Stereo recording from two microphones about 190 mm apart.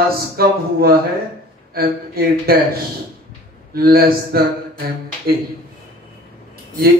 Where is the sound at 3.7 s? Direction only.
55° right (ahead or behind).